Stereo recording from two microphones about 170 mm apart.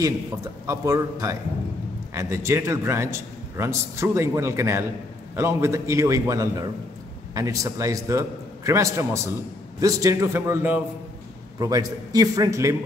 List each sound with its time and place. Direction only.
0.7 s a man's voice: 20° right (ahead or behind)